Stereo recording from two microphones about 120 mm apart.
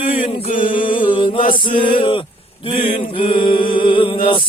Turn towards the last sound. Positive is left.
turn(degrees=45)  # may be behind; listen again after turning